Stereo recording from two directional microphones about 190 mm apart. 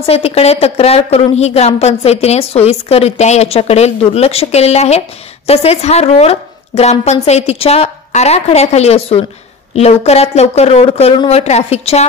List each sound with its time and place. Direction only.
0.1 s a woman's voice: 30° left (ahead or behind)